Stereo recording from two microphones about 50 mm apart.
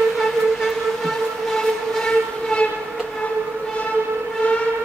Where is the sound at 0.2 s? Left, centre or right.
Centre.